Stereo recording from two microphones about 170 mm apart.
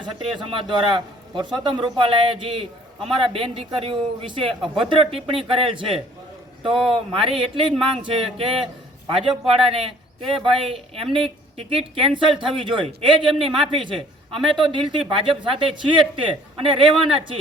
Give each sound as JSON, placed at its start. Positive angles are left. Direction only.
{"t": 0.0, "sound": "a man's voice", "side_deg": -25}